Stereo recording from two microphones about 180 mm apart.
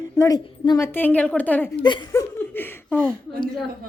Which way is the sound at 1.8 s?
25° left (ahead or behind).